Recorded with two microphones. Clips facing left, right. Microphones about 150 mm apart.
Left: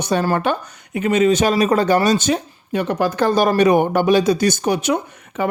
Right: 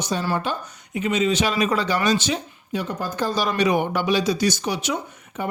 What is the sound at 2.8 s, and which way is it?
Speech, 75° left (ahead or behind).